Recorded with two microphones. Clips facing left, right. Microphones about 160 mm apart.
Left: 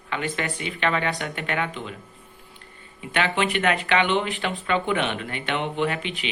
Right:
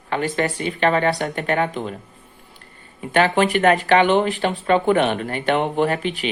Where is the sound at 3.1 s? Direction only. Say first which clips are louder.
Right 7 dB; 40° right (ahead or behind).